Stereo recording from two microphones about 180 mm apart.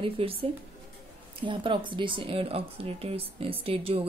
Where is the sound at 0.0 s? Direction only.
30° right (ahead or behind).